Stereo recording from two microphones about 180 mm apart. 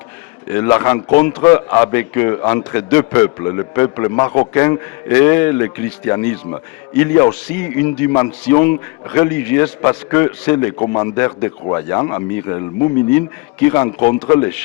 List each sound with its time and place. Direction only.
0.5 s a man's voice: 15° left (ahead or behind)